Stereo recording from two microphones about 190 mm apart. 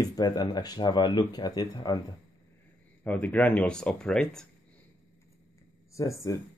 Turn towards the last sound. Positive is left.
turn(degrees=15)  # may be behind; listen again after turning